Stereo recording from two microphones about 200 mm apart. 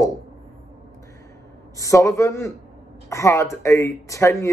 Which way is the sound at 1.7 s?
15° left (ahead or behind).